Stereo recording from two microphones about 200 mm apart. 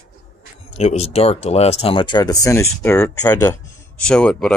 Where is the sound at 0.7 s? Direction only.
30° left (ahead or behind).